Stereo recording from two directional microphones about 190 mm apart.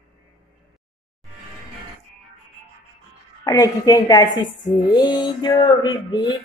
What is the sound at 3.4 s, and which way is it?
A woman's voice, 20° left (ahead or behind).